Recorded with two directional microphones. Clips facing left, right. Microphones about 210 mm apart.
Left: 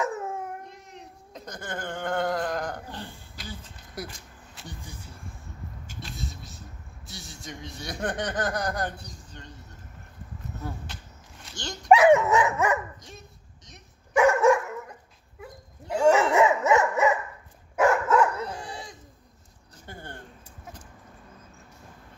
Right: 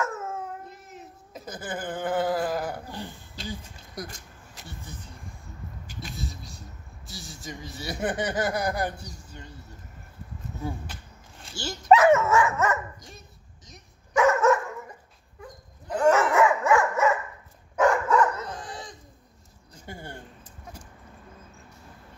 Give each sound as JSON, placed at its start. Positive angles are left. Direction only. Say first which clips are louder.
{"t": 0.0, "sound": "dog", "louder": "left 2 dB", "side_deg": 15}
{"t": 0.7, "sound": "a sound", "louder": "right 1 dB", "side_deg": -5}
{"t": 3.4, "sound": "a sound", "louder": "right 5 dB", "side_deg": -25}
{"t": 4.0, "sound": "speech", "louder": "even", "side_deg": 5}
{"t": 4.6, "sound": "vehicle", "louder": "even", "side_deg": 10}
{"t": 5.9, "sound": "a sound", "louder": "right 2 dB", "side_deg": 0}
{"t": 7.1, "sound": "speech", "louder": "right 2 dB", "side_deg": 0}
{"t": 11.5, "sound": "speech", "louder": "right 3 dB", "side_deg": -5}
{"t": 11.9, "sound": "dog", "louder": "left 1 dB", "side_deg": 15}
{"t": 14.1, "sound": "dog", "louder": "left 1 dB", "side_deg": 10}
{"t": 16.3, "sound": "dog", "louder": "even", "side_deg": 25}
{"t": 17.7, "sound": "dog", "louder": "even", "side_deg": 5}
{"t": 19.9, "sound": "a sound", "louder": "right 2 dB", "side_deg": -10}